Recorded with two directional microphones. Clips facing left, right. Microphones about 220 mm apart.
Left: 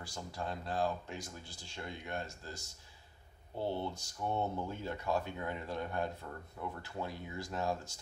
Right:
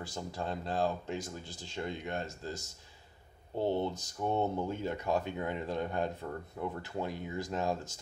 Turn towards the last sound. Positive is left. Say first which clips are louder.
# right 3 dB
turn(degrees=-20)  # may be behind; listen again after turning